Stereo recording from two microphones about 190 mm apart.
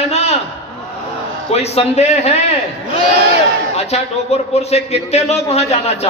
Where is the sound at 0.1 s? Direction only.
35° left (ahead or behind).